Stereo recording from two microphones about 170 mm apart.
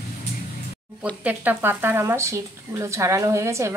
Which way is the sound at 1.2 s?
10° right (ahead or behind).